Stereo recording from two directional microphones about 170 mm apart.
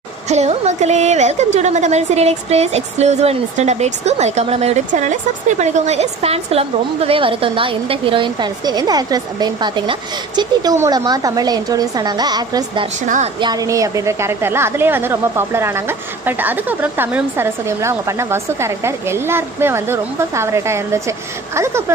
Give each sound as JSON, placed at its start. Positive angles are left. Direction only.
{"t": 0.3, "sound": "a woman's voice", "side_deg": -40}
{"t": 13.0, "sound": "a woman's voice", "side_deg": -50}
{"t": 13.4, "sound": "a woman's voice", "side_deg": -20}